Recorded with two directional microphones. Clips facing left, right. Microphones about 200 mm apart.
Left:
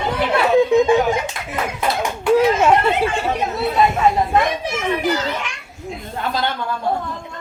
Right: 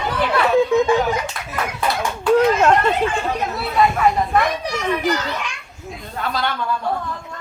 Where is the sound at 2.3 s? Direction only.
5° left (ahead or behind).